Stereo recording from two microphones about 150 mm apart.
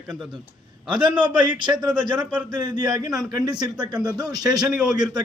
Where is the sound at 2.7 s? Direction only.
25° right (ahead or behind).